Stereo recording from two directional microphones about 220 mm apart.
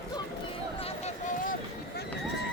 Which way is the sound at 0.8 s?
30° left (ahead or behind).